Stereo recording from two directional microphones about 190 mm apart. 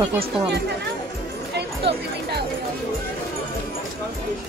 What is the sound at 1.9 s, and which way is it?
Speech, 65° right (ahead or behind).